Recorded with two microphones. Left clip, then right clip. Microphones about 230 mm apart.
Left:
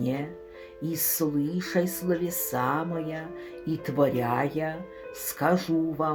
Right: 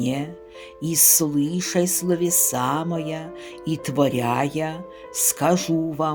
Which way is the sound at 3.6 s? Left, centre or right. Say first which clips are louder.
Right 3 dB; right.